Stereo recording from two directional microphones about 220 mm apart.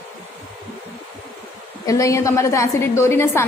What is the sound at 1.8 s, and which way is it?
A woman's voice, 15° left (ahead or behind).